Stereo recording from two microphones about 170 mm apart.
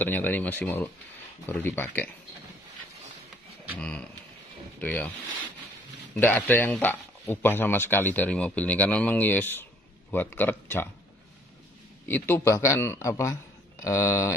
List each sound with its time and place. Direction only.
0.0 s speech: 10° left (ahead or behind)
3.7 s speech: 5° left (ahead or behind)
6.1 s speech: 10° left (ahead or behind)
12.1 s speech: 15° left (ahead or behind)